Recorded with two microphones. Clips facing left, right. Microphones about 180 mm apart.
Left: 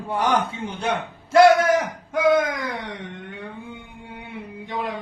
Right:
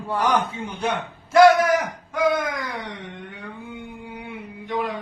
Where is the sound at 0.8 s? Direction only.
25° left (ahead or behind).